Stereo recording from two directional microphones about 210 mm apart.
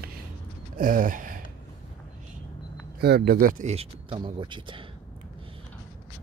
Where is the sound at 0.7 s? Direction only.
40° right (ahead or behind).